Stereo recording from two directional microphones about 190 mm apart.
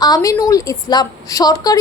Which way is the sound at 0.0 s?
20° left (ahead or behind).